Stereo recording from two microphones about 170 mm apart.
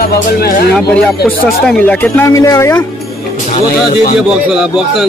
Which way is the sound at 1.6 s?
10° left (ahead or behind).